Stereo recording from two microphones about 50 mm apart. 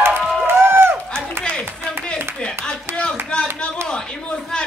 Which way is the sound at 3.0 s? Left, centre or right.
Left.